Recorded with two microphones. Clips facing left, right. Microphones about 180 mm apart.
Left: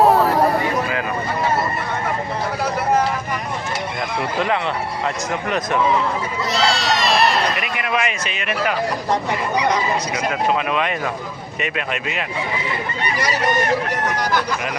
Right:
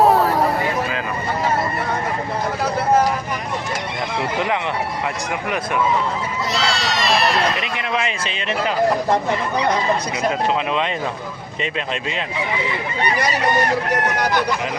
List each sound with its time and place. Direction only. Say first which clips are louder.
0.0 s a sound: left 1 dB; centre (ahead or behind)
6.5 s run: left 4 dB; centre (ahead or behind)
7.8 s a man's voice: left 1 dB; 25° right (ahead or behind)